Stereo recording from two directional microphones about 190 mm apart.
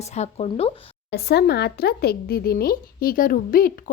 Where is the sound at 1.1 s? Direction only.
55° left (ahead or behind).